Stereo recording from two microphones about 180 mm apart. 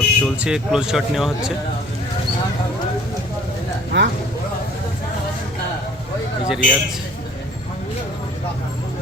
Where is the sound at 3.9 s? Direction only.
90° right.